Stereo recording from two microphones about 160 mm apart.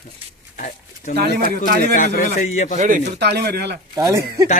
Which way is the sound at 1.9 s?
55° left (ahead or behind).